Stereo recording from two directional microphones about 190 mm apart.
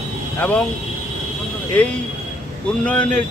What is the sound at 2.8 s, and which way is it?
Speech, 5° left (ahead or behind).